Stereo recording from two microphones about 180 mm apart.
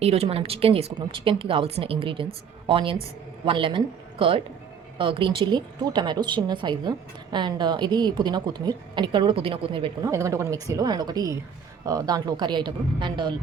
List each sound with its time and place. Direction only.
0.0 s a woman's voice: 35° right (ahead or behind)
10.1 s a woman's voice: 15° right (ahead or behind)